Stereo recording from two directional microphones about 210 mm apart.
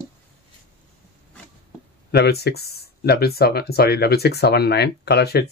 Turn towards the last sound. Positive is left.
turn(degrees=50)  # may be behind; listen again after turning